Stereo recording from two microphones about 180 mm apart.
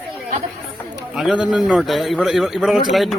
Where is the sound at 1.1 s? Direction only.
5° right (ahead or behind).